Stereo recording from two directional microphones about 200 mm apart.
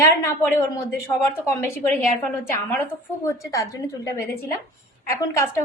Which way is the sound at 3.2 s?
15° left (ahead or behind).